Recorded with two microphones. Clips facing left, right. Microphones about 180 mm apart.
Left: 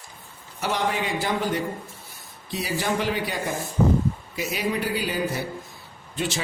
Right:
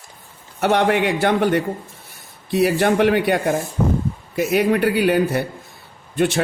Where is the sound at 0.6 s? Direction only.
65° right (ahead or behind).